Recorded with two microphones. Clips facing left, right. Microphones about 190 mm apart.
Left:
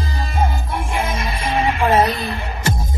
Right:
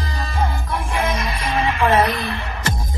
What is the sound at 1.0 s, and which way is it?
Music, 30° left (ahead or behind).